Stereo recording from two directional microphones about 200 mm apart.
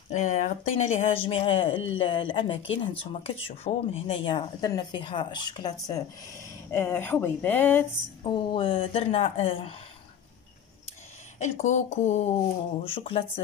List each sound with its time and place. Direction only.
0.1 s speech: 40° left (ahead or behind); by 5.7 s 20° left (ahead or behind)
6.7 s speech: 10° left (ahead or behind)
8.2 s speech: 25° left (ahead or behind)
11.3 s speech: 35° left (ahead or behind)